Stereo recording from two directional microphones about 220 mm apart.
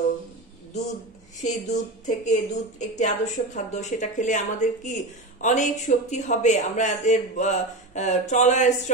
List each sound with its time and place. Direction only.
1.4 s a woman's voice: 35° left (ahead or behind)